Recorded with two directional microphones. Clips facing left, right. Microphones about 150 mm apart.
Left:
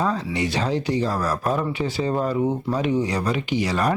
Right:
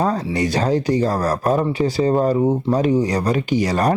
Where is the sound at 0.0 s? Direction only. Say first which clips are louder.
Right 4 dB; 40° right (ahead or behind).